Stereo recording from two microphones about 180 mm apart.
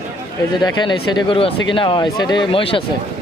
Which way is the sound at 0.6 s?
25° left (ahead or behind).